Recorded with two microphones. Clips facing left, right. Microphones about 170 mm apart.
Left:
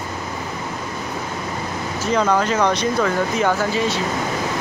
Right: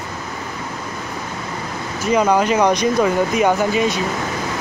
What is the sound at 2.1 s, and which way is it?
Speech, 15° right (ahead or behind).